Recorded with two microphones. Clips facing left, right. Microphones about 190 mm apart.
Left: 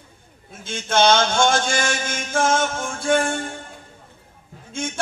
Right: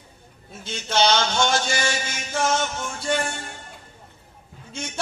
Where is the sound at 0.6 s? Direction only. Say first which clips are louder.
Left 4 dB; 50° left (ahead or behind).